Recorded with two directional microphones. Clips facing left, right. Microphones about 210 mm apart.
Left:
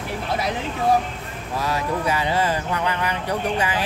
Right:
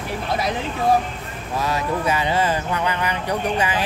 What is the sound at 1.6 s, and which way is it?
Speech, 20° right (ahead or behind).